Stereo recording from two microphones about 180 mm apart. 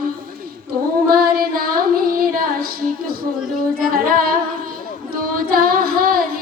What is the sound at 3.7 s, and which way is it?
Singing, 50° right (ahead or behind).